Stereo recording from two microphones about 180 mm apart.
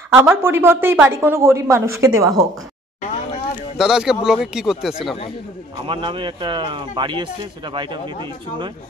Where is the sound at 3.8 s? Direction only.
5° right (ahead or behind).